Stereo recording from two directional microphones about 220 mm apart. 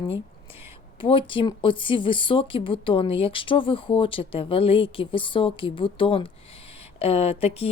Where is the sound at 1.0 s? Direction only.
25° left (ahead or behind).